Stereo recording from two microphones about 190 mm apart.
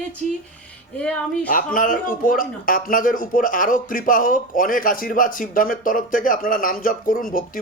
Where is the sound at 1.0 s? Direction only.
5° left (ahead or behind).